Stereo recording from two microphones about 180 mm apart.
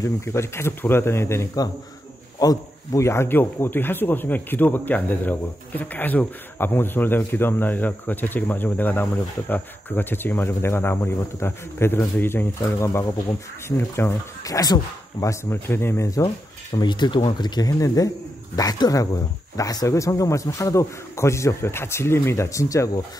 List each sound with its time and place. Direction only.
0.0 s speech: 15° left (ahead or behind)